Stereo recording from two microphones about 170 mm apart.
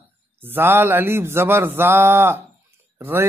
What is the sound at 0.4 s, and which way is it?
Speech, 10° right (ahead or behind).